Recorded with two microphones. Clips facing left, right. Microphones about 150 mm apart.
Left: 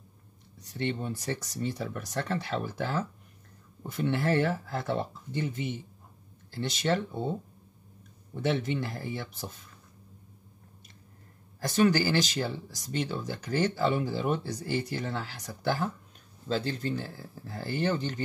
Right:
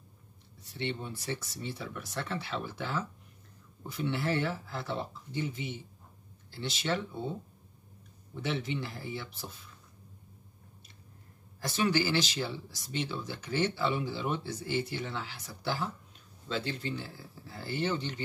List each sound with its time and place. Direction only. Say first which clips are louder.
0.7 s speech: left 4 dB; 45° left (ahead or behind)
8.4 s speech: left 5 dB; 45° left (ahead or behind)
11.6 s speech: left 5 dB; 45° left (ahead or behind)